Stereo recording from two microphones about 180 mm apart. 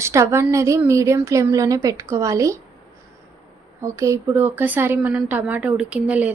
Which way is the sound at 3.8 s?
15° right (ahead or behind).